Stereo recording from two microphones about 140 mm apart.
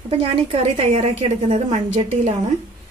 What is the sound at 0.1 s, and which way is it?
A woman's voice, 40° right (ahead or behind).